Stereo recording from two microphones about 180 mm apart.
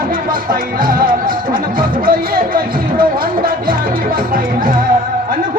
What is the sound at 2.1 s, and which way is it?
Speech, 55° right (ahead or behind).